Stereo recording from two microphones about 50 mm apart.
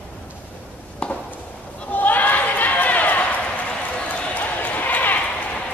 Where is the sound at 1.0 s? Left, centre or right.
Left.